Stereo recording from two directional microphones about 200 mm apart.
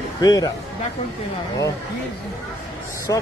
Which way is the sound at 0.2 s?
20° left (ahead or behind).